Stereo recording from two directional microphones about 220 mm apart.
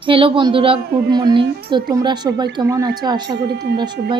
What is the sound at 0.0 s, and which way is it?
A woman's voice, 25° right (ahead or behind).